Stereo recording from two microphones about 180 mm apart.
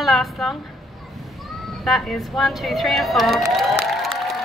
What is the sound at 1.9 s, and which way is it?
Speech, centre (ahead or behind).